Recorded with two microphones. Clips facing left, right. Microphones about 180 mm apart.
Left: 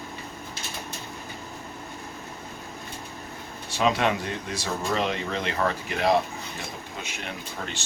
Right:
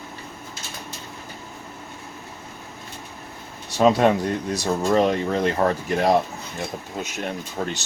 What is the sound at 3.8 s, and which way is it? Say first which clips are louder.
Speech: right 7 dB; 40° right (ahead or behind).